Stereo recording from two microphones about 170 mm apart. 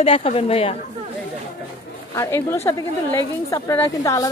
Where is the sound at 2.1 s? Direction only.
15° left (ahead or behind).